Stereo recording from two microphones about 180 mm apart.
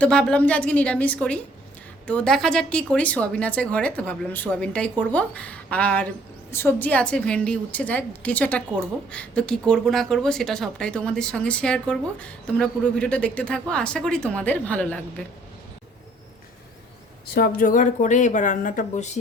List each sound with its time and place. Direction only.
0.0 s a woman's voice: 5° left (ahead or behind)
17.3 s speech: 55° left (ahead or behind)